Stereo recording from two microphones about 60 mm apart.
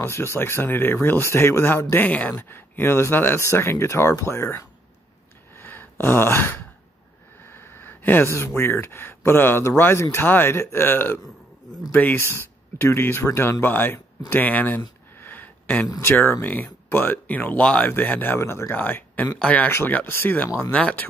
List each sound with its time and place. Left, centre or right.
0.0 s speech: left
2.0 s speech: left
2.4 s speech: left
5.6 s a sound: left
8.3 s speech: left
14.3 s a sound: left
16.0 s speech: left
17.6 s speech: centre
17.8 s speech: left
18.4 s speech: left
18.7 s speech: left
20.7 s speech: left